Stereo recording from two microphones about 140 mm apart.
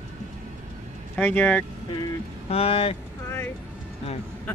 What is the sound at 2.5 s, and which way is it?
Speech, 45° left (ahead or behind).